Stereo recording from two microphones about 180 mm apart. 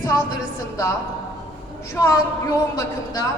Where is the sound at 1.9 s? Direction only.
15° left (ahead or behind).